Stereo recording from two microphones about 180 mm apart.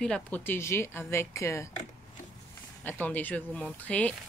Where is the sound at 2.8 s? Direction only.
10° left (ahead or behind).